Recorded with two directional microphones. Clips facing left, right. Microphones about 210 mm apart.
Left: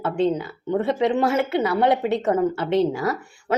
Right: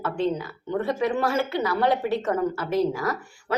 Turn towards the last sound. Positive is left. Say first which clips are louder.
# left 3 dB
turn(degrees=25)  # may be behind; listen again after turning